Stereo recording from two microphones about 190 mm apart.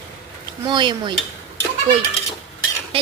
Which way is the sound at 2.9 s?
30° right (ahead or behind).